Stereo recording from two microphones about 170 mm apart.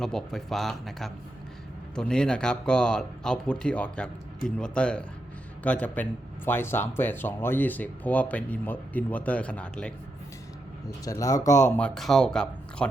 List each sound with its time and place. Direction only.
0.0 s a man's voice: 5° left (ahead or behind)
11.0 s speech: 20° left (ahead or behind)
11.8 s speech: centre (ahead or behind)